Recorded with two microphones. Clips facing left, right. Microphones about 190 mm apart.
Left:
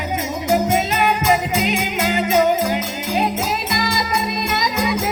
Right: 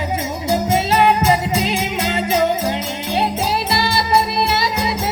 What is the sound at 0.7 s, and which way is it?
Music, 30° right (ahead or behind).